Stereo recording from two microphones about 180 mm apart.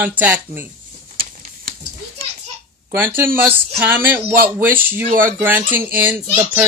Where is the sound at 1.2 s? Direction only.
55° right (ahead or behind).